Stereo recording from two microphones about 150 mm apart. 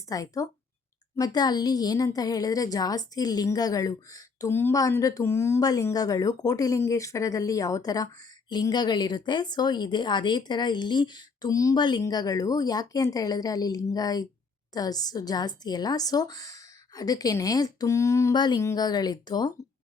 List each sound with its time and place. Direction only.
0.1 s a woman's voice: 20° left (ahead or behind)